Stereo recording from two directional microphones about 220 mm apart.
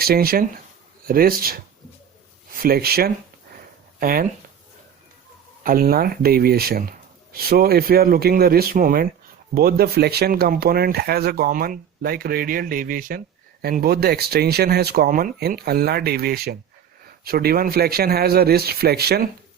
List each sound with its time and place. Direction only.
0.0 s speech: 40° right (ahead or behind)
5.6 s speech: 40° right (ahead or behind)